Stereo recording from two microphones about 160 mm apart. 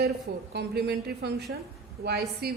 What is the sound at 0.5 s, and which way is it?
A woman's voice, 90° right.